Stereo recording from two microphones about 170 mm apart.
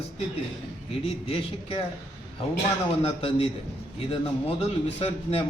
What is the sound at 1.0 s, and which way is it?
Speech, 35° left (ahead or behind).